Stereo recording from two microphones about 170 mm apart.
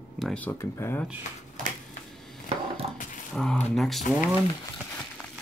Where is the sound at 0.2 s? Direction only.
5° left (ahead or behind).